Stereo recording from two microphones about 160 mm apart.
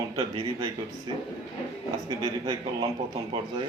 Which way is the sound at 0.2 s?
25° right (ahead or behind).